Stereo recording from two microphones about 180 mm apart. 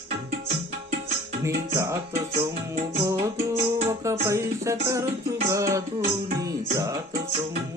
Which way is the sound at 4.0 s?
15° right (ahead or behind).